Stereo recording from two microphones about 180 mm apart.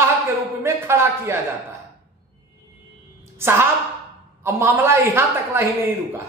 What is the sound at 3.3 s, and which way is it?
A woman's voice, 15° right (ahead or behind).